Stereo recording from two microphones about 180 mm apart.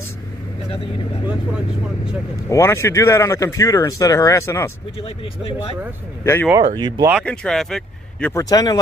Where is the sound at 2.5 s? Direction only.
15° left (ahead or behind).